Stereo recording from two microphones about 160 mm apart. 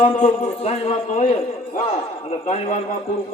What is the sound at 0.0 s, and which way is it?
A man's voice, 45° left (ahead or behind).